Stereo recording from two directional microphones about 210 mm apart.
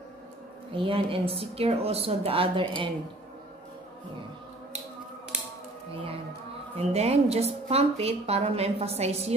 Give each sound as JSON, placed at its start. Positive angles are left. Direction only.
{"t": 0.7, "sound": "a woman's voice", "side_deg": -25}
{"t": 6.8, "sound": "a woman's voice", "side_deg": -30}